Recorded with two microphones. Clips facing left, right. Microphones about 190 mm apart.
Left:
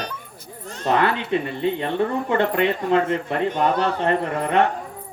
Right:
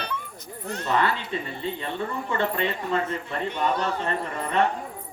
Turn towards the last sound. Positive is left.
turn(degrees=60)  # may be behind; listen again after turning